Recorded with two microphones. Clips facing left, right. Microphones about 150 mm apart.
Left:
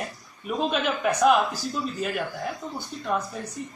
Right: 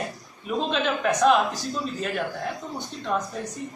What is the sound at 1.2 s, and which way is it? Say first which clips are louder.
Speech: even; 5° left (ahead or behind).